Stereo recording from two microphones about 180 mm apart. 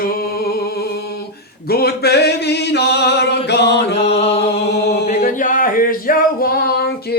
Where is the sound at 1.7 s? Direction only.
60° left (ahead or behind).